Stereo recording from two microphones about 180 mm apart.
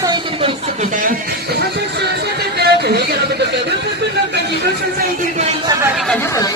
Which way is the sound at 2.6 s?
65° right (ahead or behind).